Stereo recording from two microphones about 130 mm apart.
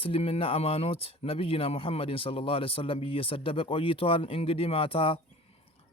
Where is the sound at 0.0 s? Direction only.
45° left (ahead or behind).